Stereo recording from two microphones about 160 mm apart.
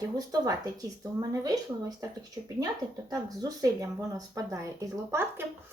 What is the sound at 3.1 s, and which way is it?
Speech, 20° right (ahead or behind).